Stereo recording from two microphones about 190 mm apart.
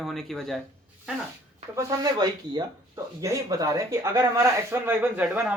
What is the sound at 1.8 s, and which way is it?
Speech, 20° right (ahead or behind).